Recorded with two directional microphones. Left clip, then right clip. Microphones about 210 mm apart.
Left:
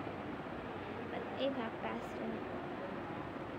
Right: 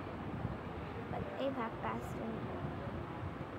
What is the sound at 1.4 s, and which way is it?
Speech, 35° right (ahead or behind).